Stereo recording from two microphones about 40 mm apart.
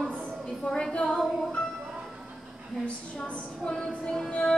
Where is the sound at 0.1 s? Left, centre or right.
Left.